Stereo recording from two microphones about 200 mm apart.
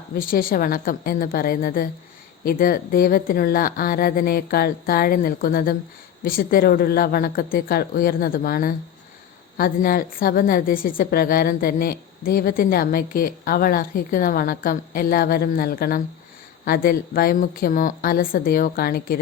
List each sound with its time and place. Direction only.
0.1 s a woman's voice: 45° left (ahead or behind)